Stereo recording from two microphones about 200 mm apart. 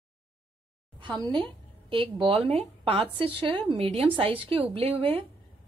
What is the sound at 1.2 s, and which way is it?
A woman's voice, 25° right (ahead or behind).